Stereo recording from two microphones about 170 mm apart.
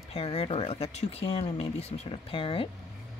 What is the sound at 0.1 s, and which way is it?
Speech, 35° left (ahead or behind).